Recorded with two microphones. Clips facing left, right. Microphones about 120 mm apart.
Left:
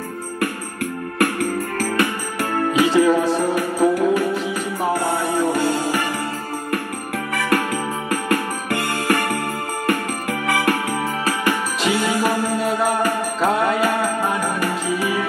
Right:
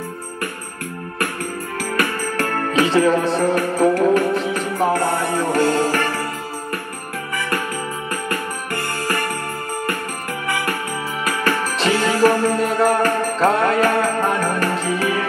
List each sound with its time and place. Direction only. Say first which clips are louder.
2.3 s music: left 1 dB; 10° left (ahead or behind)
7.3 s music: left 4 dB; 70° left (ahead or behind)
9.0 s music: left 4 dB; 70° left (ahead or behind)
10.4 s music: left 4 dB; 75° left (ahead or behind)
11.4 s music: right 3 dB; 5° left (ahead or behind)